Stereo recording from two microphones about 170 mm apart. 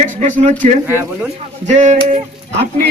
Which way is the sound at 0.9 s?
10° right (ahead or behind).